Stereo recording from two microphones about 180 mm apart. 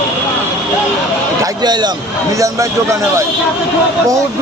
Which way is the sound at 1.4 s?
25° right (ahead or behind).